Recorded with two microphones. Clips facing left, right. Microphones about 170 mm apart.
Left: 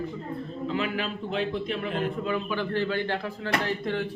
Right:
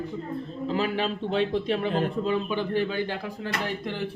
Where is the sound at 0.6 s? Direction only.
35° right (ahead or behind).